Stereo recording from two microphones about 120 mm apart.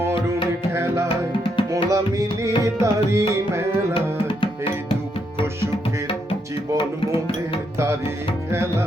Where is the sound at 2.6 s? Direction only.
25° right (ahead or behind).